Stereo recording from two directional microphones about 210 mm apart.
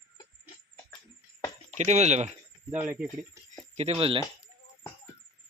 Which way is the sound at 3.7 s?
30° right (ahead or behind).